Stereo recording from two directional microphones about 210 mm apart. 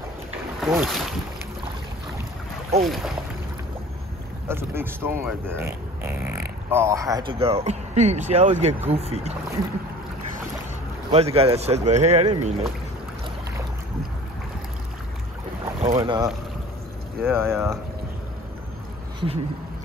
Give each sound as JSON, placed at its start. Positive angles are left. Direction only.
{"t": 0.6, "sound": "speech", "side_deg": 0}
{"t": 2.8, "sound": "speech", "side_deg": 0}
{"t": 4.5, "sound": "speech", "side_deg": -10}
{"t": 11.1, "sound": "speech", "side_deg": -30}
{"t": 16.0, "sound": "speech", "side_deg": -20}
{"t": 19.1, "sound": "speech", "side_deg": -25}